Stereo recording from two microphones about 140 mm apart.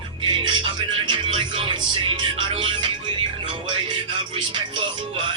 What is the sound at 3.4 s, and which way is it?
Speech, 40° right (ahead or behind).